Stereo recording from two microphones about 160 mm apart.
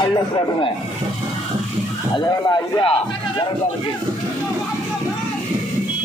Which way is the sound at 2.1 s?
30° left (ahead or behind).